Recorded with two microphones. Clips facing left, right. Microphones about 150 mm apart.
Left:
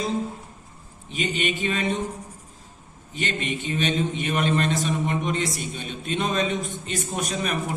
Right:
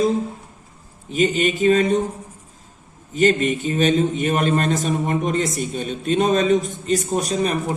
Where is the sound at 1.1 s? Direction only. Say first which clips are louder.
Right 8 dB; 40° right (ahead or behind).